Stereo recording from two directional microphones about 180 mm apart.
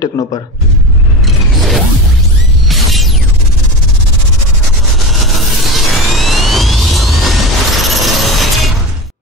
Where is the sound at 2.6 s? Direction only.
Centre (ahead or behind).